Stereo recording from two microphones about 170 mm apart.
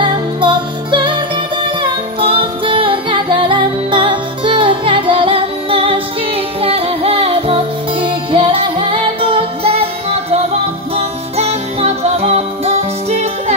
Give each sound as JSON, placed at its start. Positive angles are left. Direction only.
{"t": 0.0, "sound": "music", "side_deg": -30}